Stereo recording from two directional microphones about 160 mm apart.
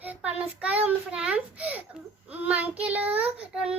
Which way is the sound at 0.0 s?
10° right (ahead or behind).